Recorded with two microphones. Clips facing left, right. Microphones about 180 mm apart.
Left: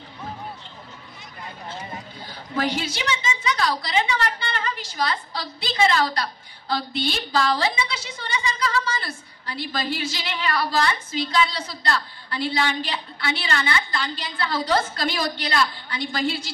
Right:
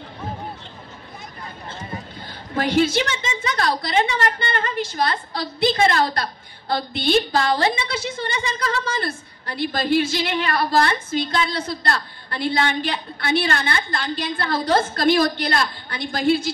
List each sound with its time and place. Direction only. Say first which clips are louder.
2.6 s a woman's voice: right 8 dB; 55° right (ahead or behind)